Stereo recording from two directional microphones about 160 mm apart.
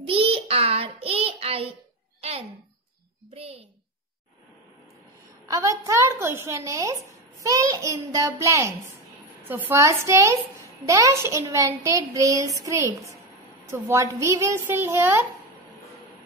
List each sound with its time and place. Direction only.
0.0 s child singing: 35° right (ahead or behind)
3.3 s a sound: 35° right (ahead or behind)
5.5 s a woman's voice: 20° right (ahead or behind)